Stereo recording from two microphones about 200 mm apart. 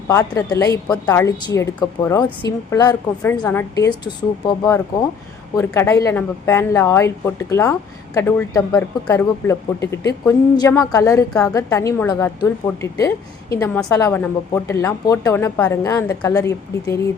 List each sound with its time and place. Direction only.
0.1 s a woman's voice: 15° left (ahead or behind)